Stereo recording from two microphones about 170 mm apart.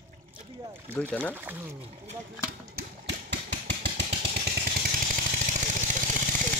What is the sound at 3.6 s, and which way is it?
Vehicle, 90° right.